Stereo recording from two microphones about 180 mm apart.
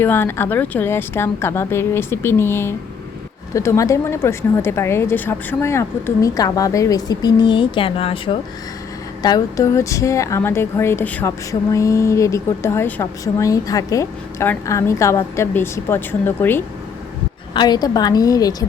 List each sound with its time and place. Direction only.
0.0 s speech: 10° left (ahead or behind); by 8.4 s 30° left (ahead or behind)
9.2 s speech: 20° left (ahead or behind)
17.5 s a woman's voice: 25° left (ahead or behind)